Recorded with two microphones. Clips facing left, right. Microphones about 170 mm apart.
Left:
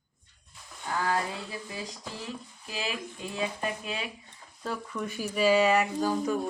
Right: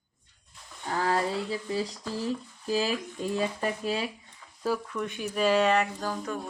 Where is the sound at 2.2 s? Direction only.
35° right (ahead or behind).